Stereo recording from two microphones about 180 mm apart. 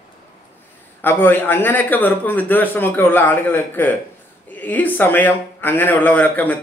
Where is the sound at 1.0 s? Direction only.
10° left (ahead or behind).